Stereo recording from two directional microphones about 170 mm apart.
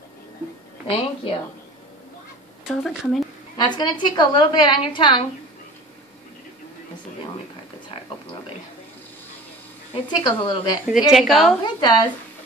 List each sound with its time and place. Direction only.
0.8 s a woman's voice: 35° left (ahead or behind)
2.6 s speech: centre (ahead or behind)
3.5 s a woman's voice: 25° left (ahead or behind)
9.9 s a woman's voice: 25° left (ahead or behind)
10.9 s speech: 5° right (ahead or behind)
11.6 s a woman's voice: 25° left (ahead or behind)